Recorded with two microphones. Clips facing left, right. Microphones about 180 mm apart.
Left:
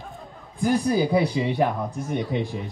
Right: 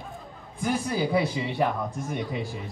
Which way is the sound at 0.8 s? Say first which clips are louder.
Left 3 dB; 35° left (ahead or behind).